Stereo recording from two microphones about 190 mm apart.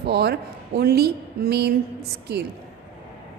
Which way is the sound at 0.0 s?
60° right (ahead or behind).